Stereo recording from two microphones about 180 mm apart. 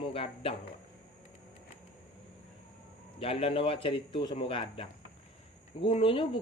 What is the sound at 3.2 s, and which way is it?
Speech, 30° left (ahead or behind).